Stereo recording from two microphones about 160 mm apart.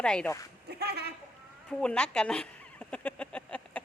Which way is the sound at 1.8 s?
5° left (ahead or behind).